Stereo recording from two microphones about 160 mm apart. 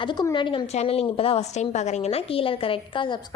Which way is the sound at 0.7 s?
40° left (ahead or behind).